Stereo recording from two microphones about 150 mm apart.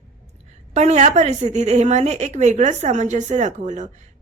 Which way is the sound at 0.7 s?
45° right (ahead or behind).